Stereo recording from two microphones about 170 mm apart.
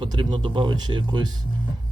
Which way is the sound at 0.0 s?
25° right (ahead or behind).